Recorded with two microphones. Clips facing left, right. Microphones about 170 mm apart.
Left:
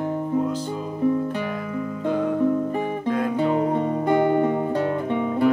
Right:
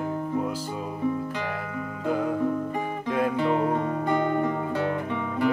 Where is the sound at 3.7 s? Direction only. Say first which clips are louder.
Left 5 dB; 25° left (ahead or behind).